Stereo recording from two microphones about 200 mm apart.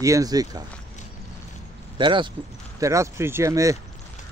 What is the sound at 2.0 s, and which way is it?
A man's voice, 25° right (ahead or behind).